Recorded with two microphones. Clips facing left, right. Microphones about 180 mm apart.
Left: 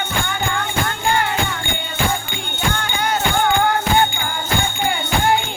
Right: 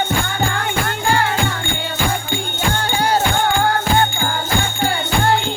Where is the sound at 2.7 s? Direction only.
35° right (ahead or behind).